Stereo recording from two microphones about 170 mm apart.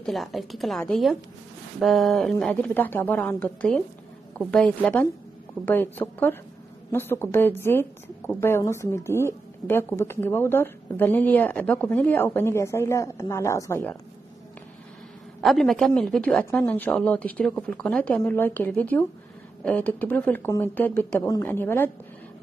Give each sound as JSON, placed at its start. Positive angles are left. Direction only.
{"t": 0.0, "sound": "a woman's voice", "side_deg": 0}
{"t": 15.4, "sound": "a woman's voice", "side_deg": 0}